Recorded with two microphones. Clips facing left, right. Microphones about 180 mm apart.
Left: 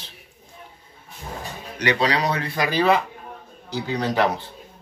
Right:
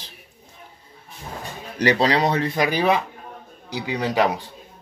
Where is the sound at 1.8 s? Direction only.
35° right (ahead or behind); by 4.4 s 10° right (ahead or behind).